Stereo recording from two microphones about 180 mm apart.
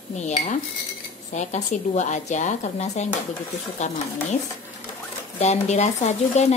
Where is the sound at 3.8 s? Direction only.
45° left (ahead or behind).